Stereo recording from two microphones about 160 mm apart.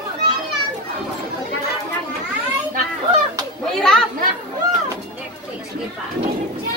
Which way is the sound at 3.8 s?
5° left (ahead or behind).